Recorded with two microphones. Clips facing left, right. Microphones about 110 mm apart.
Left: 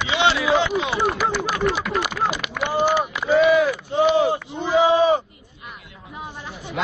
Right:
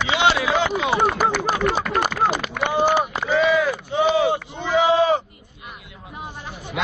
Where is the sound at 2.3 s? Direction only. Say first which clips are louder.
Right 1 dB; 45° right (ahead or behind).